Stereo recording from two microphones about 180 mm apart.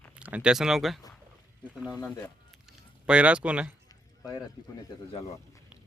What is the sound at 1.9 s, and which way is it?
Speech, 10° left (ahead or behind).